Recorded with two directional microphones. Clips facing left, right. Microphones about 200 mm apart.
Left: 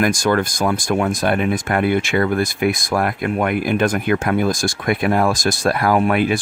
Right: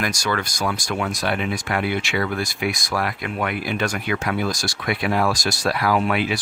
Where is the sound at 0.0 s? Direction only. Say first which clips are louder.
Left 8 dB; 50° left (ahead or behind).